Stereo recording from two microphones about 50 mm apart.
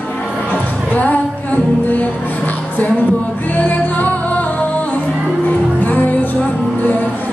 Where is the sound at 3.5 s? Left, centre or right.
Left.